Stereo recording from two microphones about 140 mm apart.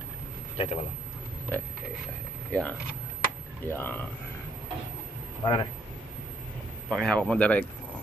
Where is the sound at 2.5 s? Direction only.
10° left (ahead or behind).